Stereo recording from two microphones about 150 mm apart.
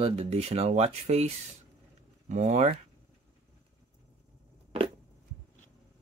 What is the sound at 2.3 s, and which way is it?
Speech, 50° right (ahead or behind).